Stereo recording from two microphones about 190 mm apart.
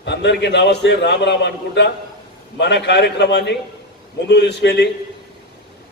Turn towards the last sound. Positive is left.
turn(degrees=60)  # may be behind; listen again after turning